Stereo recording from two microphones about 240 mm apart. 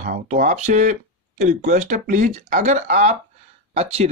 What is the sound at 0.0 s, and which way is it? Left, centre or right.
Speech, right.